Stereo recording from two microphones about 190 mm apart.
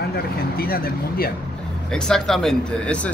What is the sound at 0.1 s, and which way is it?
Speech, 50° left (ahead or behind).